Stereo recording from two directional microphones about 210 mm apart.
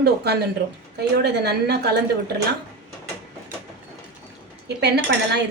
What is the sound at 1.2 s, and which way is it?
Speech, 50° right (ahead or behind).